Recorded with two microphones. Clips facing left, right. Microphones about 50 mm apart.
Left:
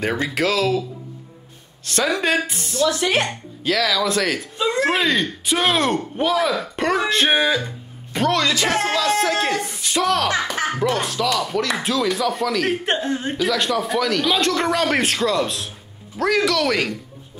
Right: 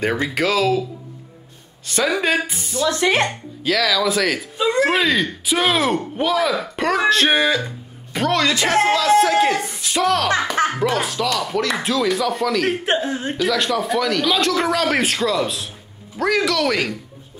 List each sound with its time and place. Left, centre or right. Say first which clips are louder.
0.3 s speech: right 1 dB; centre
1.9 s speech: right 1 dB; centre
2.9 s speech: right 5 dB; right
3.3 s speech: right 1 dB; centre